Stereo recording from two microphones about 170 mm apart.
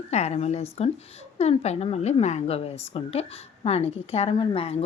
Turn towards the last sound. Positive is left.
turn(degrees=35)  # may be behind; listen again after turning